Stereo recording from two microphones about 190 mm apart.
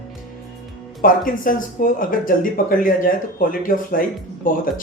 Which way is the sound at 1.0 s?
45° left (ahead or behind).